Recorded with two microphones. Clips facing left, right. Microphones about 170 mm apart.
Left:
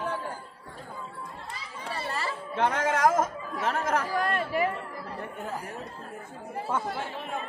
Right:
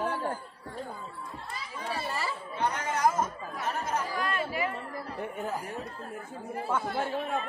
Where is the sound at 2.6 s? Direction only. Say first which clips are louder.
Left 4 dB; 90° left.